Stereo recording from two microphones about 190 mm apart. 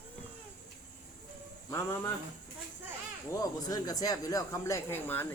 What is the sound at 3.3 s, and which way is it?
Speech, 20° left (ahead or behind).